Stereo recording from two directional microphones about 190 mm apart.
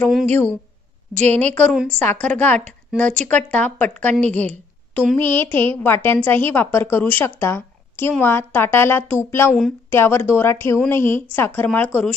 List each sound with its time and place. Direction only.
1.2 s a woman's voice: 35° right (ahead or behind)
1.5 s a woman's voice: 5° left (ahead or behind)
4.2 s a woman's voice: 35° right (ahead or behind)
4.5 s a woman's voice: 10° left (ahead or behind)